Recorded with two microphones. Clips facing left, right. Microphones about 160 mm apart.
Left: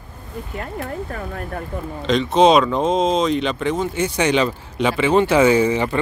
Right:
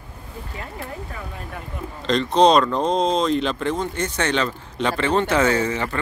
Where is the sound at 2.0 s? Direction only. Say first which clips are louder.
Left 2 dB; centre (ahead or behind).